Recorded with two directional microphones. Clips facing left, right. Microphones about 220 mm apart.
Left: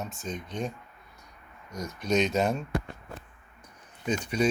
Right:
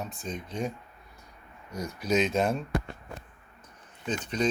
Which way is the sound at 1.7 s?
30° right (ahead or behind).